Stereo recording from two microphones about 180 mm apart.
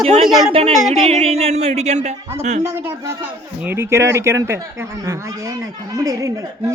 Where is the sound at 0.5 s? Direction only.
35° right (ahead or behind).